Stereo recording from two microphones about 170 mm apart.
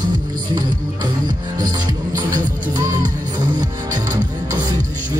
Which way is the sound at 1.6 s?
20° right (ahead or behind).